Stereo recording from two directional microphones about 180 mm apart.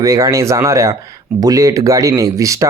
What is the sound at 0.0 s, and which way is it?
Speech, 20° right (ahead or behind).